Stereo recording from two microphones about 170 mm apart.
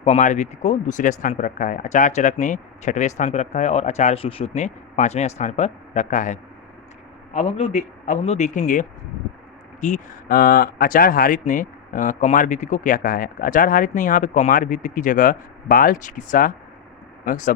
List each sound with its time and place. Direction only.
0.0 s speech: 45° left (ahead or behind)